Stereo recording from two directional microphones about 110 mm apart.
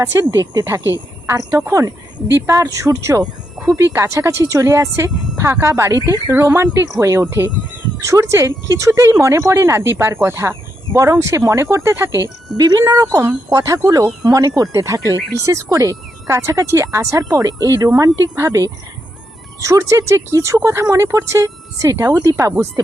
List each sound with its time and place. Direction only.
0.0 s speech: 30° right (ahead or behind)